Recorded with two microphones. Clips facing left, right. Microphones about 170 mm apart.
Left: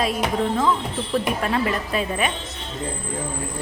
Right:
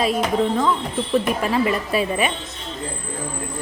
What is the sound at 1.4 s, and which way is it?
Speech, 5° right (ahead or behind).